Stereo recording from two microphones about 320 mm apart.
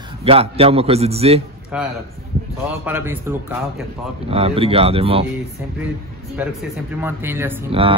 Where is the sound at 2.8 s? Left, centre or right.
Centre.